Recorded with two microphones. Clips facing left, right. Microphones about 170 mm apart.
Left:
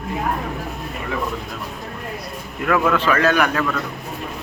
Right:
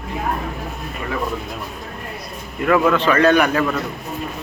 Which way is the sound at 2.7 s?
5° right (ahead or behind).